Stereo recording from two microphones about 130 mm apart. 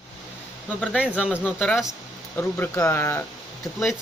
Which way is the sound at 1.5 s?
10° left (ahead or behind).